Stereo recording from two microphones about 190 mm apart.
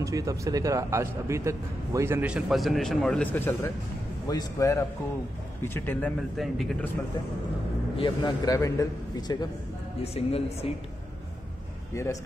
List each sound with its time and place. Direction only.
0.0 s a man's voice: 15° right (ahead or behind); by 6.9 s centre (ahead or behind)
8.0 s a man's voice: 25° left (ahead or behind)
10.0 s a woman's voice: 30° left (ahead or behind)
11.9 s speech: 15° left (ahead or behind)